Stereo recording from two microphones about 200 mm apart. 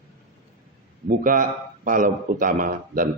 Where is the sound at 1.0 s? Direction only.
45° right (ahead or behind).